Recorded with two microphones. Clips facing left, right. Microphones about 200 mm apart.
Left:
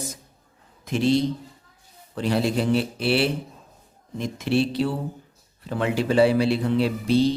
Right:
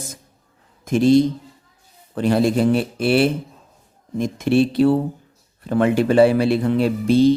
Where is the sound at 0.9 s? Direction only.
50° right (ahead or behind).